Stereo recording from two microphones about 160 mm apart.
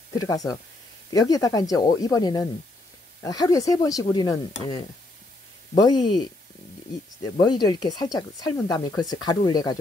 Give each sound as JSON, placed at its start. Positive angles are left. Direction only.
{"t": 0.1, "sound": "speech", "side_deg": 20}
{"t": 7.3, "sound": "speech", "side_deg": 25}